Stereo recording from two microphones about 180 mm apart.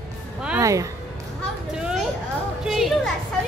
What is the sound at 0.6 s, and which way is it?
Speech, 20° right (ahead or behind).